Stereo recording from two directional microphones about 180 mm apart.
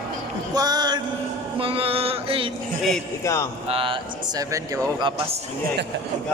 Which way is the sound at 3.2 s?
15° left (ahead or behind).